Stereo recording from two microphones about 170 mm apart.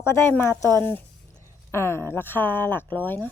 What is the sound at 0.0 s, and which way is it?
Speech, 15° left (ahead or behind).